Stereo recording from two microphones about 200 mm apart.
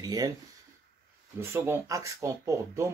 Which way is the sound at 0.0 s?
20° right (ahead or behind).